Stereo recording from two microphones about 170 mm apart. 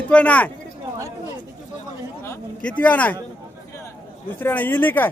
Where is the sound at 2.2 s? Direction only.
10° left (ahead or behind).